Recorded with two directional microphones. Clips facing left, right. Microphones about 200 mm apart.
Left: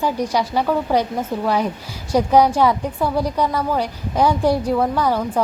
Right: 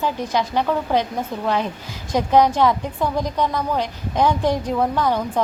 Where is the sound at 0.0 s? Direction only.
10° left (ahead or behind).